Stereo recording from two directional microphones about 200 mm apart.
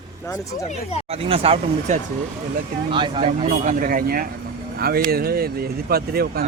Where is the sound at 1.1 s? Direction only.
30° right (ahead or behind).